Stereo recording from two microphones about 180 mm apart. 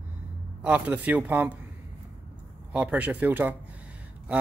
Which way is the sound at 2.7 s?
5° right (ahead or behind).